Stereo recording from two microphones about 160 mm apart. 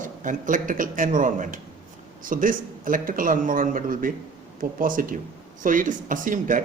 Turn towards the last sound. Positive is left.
turn(degrees=-55)  # may be behind; listen again after turning